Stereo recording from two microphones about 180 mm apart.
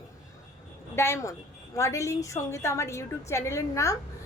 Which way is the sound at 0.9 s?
15° left (ahead or behind).